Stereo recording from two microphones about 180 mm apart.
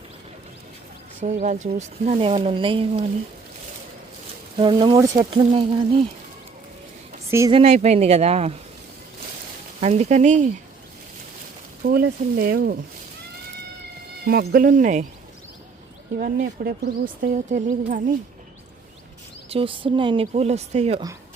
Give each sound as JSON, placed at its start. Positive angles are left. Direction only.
{"t": 1.2, "sound": "speech", "side_deg": -40}
{"t": 4.5, "sound": "speech", "side_deg": -25}
{"t": 7.3, "sound": "speech", "side_deg": -15}
{"t": 7.5, "sound": "speech", "side_deg": -35}
{"t": 9.8, "sound": "speech", "side_deg": -40}
{"t": 11.8, "sound": "speech", "side_deg": -60}
{"t": 14.3, "sound": "speech", "side_deg": -55}
{"t": 16.1, "sound": "speech", "side_deg": -60}
{"t": 17.3, "sound": "speech", "side_deg": -45}
{"t": 19.5, "sound": "speech", "side_deg": -30}